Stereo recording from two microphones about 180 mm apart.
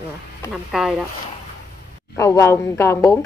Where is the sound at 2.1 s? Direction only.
15° left (ahead or behind).